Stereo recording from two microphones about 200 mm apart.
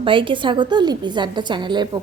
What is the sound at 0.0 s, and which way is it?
A woman's voice, 25° right (ahead or behind).